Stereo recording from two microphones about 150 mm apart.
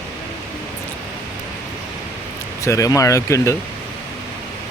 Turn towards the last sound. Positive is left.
turn(degrees=20)  # may be behind; listen again after turning